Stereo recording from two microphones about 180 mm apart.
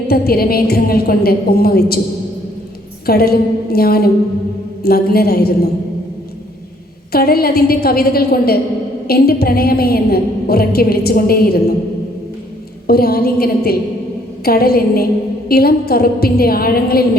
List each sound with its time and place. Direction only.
0.1 s a woman's voice: 55° left (ahead or behind)
3.1 s a woman's voice: 60° left (ahead or behind)
7.1 s a woman's voice: 60° left (ahead or behind)
12.9 s a woman's voice: 60° left (ahead or behind)